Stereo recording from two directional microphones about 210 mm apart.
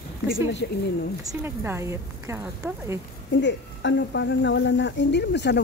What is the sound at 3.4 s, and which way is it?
Speech, 55° left (ahead or behind).